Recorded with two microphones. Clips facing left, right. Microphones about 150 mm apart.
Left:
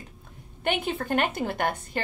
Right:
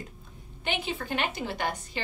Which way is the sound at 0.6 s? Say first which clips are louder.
Left 5 dB; 55° left (ahead or behind).